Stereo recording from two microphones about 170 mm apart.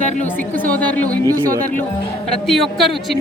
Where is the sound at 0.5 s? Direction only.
10° left (ahead or behind).